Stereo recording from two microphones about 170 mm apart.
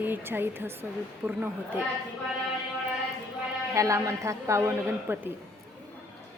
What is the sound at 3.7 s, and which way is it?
A woman's voice, 20° right (ahead or behind).